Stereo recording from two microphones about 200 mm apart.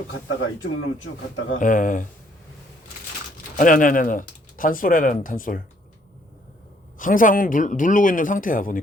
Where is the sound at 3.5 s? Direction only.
40° left (ahead or behind).